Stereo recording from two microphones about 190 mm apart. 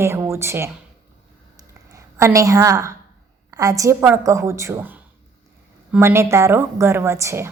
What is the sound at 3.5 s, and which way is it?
A woman's voice, 20° right (ahead or behind).